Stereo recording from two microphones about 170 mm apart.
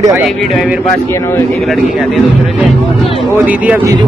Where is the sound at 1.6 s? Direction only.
Centre (ahead or behind).